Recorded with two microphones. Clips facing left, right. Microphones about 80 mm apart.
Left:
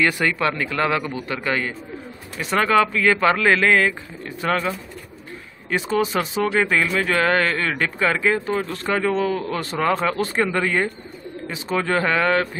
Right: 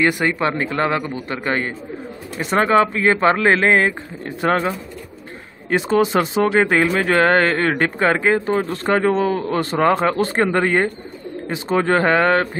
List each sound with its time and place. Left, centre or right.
0.0 s speech: right
5.8 s speech: right